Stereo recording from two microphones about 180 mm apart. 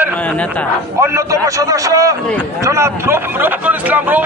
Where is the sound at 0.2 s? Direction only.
5° left (ahead or behind).